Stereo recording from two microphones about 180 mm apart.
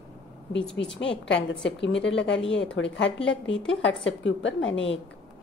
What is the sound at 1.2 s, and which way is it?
A woman's voice, 90° left.